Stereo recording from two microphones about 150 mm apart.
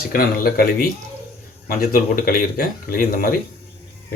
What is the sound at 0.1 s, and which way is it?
Speech, 75° left (ahead or behind).